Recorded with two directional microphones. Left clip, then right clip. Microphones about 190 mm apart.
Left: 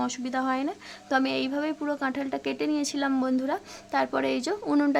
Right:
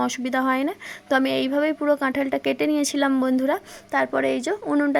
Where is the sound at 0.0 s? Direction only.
25° right (ahead or behind).